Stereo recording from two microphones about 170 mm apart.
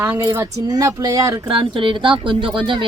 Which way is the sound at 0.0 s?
15° right (ahead or behind).